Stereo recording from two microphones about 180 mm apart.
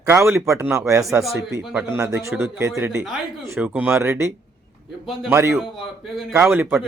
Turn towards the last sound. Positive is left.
turn(degrees=-10)  # may be behind; listen again after turning